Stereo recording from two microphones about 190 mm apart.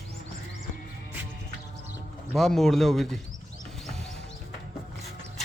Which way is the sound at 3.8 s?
5° left (ahead or behind).